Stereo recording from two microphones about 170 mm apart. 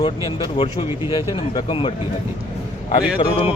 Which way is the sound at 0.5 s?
35° left (ahead or behind).